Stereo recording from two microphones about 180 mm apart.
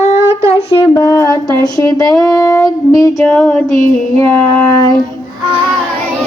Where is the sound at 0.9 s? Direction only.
20° left (ahead or behind).